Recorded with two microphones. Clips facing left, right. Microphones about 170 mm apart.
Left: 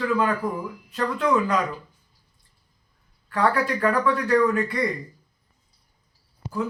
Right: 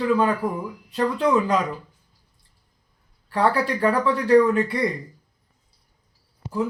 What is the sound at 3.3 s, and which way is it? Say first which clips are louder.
Speech: right 1 dB; 30° right (ahead or behind).